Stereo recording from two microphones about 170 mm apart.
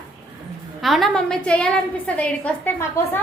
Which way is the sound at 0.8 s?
Centre (ahead or behind).